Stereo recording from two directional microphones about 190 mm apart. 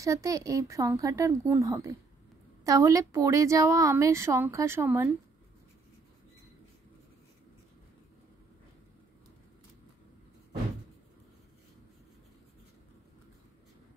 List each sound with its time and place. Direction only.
0.0 s a woman's voice: 15° right (ahead or behind)